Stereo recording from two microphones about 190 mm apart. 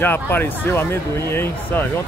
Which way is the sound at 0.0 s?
10° left (ahead or behind).